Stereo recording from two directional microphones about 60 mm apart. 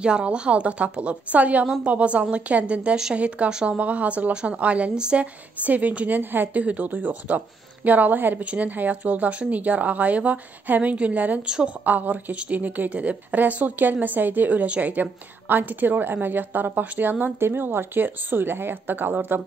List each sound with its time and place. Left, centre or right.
0.0 s a woman's voice: centre
11.4 s a woman's voice: centre
11.8 s a woman's voice: right
17.4 s speech: right